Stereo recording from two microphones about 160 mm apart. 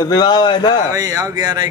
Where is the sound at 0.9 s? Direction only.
20° right (ahead or behind).